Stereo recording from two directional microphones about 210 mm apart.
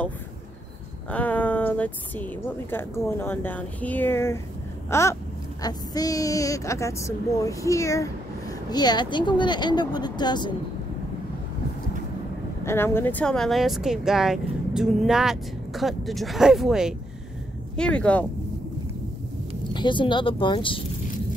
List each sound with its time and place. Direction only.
1.1 s a woman's voice: 5° left (ahead or behind)
4.8 s a sound: 15° left (ahead or behind)
5.6 s a woman's voice: 20° left (ahead or behind)
12.6 s speech: 10° left (ahead or behind)
19.6 s speech: 20° left (ahead or behind)